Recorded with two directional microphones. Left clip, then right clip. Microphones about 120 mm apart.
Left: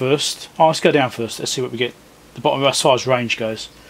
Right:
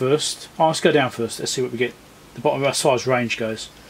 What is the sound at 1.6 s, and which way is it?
Speech, 45° left (ahead or behind).